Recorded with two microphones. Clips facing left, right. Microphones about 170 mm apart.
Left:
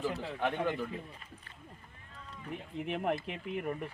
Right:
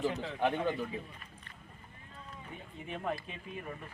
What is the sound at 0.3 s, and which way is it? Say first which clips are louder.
Speech: right 1 dB; 15° right (ahead or behind).